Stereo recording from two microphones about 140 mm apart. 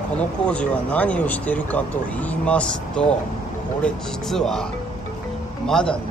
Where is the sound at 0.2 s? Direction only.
10° left (ahead or behind).